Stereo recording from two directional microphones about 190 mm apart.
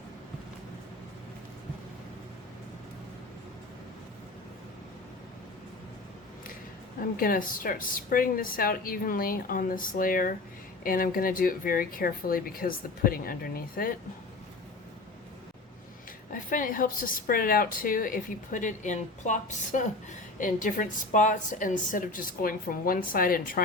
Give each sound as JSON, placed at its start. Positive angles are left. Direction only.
{"t": 7.2, "sound": "a woman's voice", "side_deg": 50}
{"t": 16.3, "sound": "a woman's voice", "side_deg": 45}